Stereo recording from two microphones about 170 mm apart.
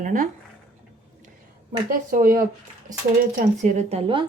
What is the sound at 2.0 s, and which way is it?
Speech, 55° right (ahead or behind).